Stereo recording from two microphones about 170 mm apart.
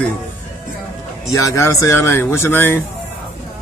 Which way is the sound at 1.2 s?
20° left (ahead or behind).